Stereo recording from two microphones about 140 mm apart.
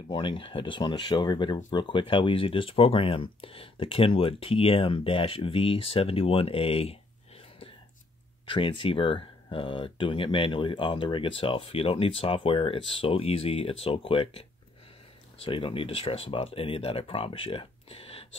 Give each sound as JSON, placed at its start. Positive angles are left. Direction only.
{"t": 0.1, "sound": "speech", "side_deg": 35}
{"t": 8.5, "sound": "speech", "side_deg": 35}
{"t": 15.4, "sound": "speech", "side_deg": 40}